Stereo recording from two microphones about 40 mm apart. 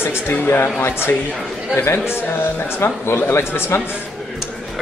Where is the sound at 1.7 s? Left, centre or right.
Left.